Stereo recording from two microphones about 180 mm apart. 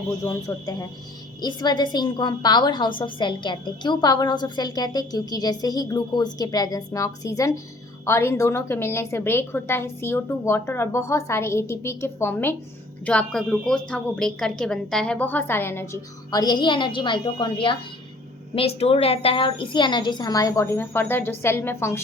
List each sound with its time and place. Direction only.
0.3 s a woman's voice: 20° left (ahead or behind)